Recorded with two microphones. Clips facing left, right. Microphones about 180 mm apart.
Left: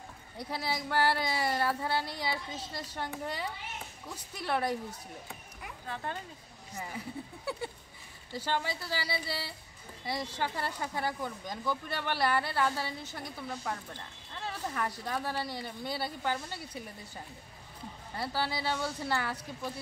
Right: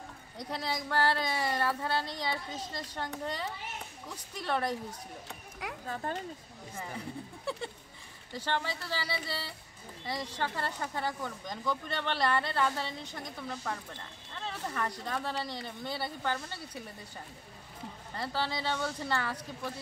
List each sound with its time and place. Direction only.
0.4 s speech: 5° left (ahead or behind)
5.9 s speech: 40° right (ahead or behind)
8.3 s speech: 10° left (ahead or behind)
18.1 s speech: 10° left (ahead or behind)